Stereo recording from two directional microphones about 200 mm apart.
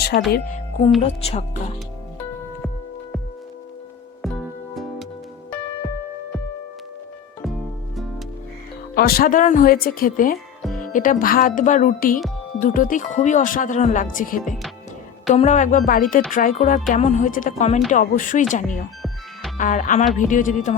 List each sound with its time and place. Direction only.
0.3 s speech: 50° left (ahead or behind)
1.0 s speech: 30° left (ahead or behind)
4.2 s music: centre (ahead or behind)
9.0 s speech: 50° left (ahead or behind)
10.6 s music: centre (ahead or behind)
10.9 s speech: 40° left (ahead or behind)